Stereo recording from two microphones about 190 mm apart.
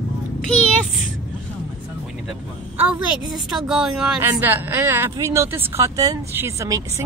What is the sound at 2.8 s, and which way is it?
A woman's voice, 5° right (ahead or behind).